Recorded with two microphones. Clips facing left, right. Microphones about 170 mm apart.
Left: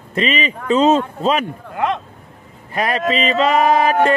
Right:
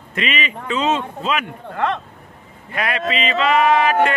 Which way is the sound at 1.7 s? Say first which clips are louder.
Left 1 dB; 15° left (ahead or behind).